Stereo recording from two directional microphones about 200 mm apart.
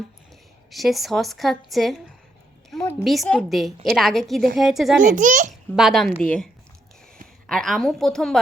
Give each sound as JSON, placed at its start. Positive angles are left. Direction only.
{"t": 0.7, "sound": "a woman's voice", "side_deg": 0}
{"t": 3.0, "sound": "a woman's voice", "side_deg": 0}
{"t": 5.0, "sound": "a child's voice", "side_deg": -40}
{"t": 5.7, "sound": "a woman's voice", "side_deg": 0}